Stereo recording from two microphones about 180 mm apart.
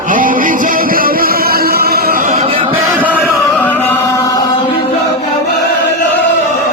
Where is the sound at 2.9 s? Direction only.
10° right (ahead or behind).